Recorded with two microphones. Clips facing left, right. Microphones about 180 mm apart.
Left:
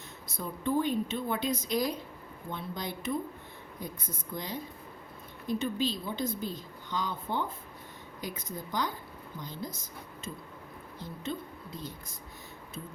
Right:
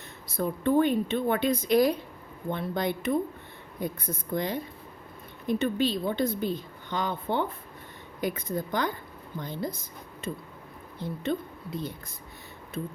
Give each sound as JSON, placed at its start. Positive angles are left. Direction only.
{"t": 0.3, "sound": "speech", "side_deg": -60}
{"t": 11.0, "sound": "speech", "side_deg": -65}